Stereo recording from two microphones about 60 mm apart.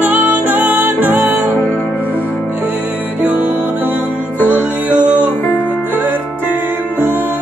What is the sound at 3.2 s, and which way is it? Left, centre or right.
Music, right.